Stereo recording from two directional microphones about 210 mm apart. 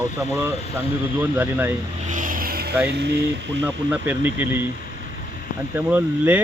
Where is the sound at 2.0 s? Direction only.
40° right (ahead or behind).